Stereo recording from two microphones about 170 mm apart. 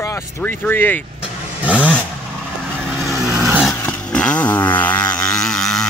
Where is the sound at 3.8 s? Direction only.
10° left (ahead or behind).